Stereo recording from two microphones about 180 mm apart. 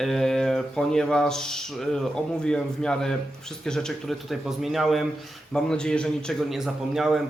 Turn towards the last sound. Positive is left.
turn(degrees=0)  # may be behind; listen again after turning